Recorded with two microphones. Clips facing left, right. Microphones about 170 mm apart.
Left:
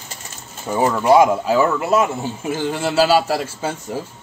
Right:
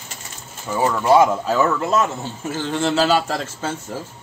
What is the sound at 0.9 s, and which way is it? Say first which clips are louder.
A man's voice: left 1 dB; 10° left (ahead or behind).